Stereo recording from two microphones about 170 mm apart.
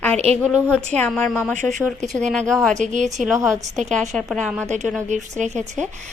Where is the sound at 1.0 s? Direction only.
5° left (ahead or behind).